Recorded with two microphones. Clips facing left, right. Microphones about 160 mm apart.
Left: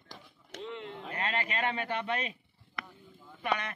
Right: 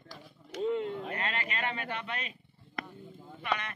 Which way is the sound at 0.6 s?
40° right (ahead or behind).